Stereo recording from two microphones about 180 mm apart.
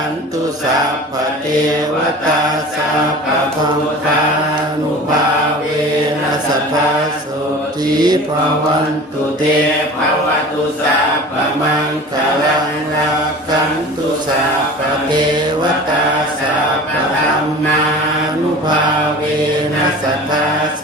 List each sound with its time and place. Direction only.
7.9 s mantra: 20° right (ahead or behind)